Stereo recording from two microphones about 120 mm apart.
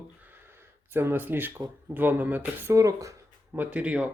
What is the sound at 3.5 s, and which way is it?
Speech, 10° right (ahead or behind).